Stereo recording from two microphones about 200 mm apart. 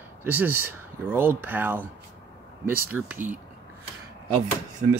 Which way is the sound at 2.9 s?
10° right (ahead or behind).